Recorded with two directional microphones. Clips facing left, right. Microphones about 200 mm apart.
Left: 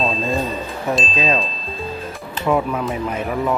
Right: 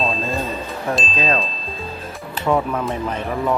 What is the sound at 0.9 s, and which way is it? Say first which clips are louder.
Speech: left 1 dB; 5° left (ahead or behind).